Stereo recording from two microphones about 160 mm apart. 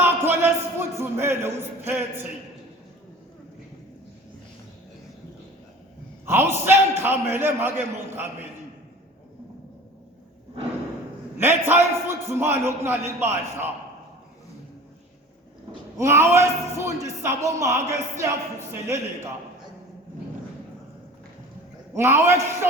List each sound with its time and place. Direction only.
0.0 s a sound: 15° right (ahead or behind)
6.2 s a man's voice: 15° right (ahead or behind)
11.3 s a man's voice: 15° right (ahead or behind)
16.0 s a man's voice: 15° right (ahead or behind)
21.9 s a man's voice: 15° right (ahead or behind)